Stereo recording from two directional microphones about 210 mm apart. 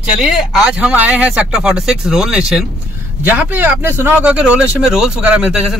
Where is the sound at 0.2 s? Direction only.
5° right (ahead or behind).